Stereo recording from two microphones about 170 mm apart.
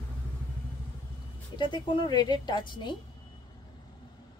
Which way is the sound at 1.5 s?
25° left (ahead or behind).